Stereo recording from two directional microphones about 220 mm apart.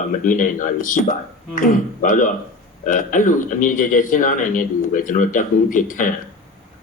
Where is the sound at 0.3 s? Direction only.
35° left (ahead or behind).